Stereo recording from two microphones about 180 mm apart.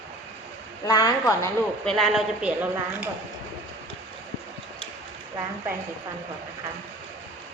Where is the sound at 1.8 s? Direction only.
5° left (ahead or behind).